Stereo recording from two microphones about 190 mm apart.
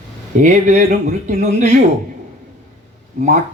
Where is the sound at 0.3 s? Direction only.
40° right (ahead or behind).